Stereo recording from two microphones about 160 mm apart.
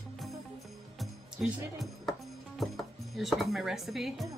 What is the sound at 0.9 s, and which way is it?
Music, centre (ahead or behind).